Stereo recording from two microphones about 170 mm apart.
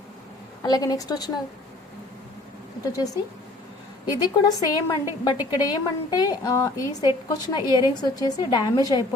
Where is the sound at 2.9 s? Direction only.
20° left (ahead or behind).